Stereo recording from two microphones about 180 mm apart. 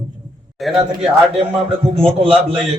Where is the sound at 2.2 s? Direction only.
30° right (ahead or behind).